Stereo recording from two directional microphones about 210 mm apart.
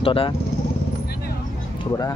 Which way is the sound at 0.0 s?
25° left (ahead or behind).